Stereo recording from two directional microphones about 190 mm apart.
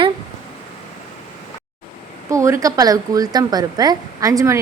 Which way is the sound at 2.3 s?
15° right (ahead or behind).